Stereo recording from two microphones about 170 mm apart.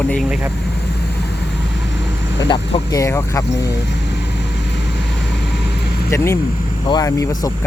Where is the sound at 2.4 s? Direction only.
30° left (ahead or behind).